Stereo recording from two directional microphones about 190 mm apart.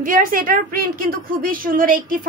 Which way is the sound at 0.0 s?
45° right (ahead or behind).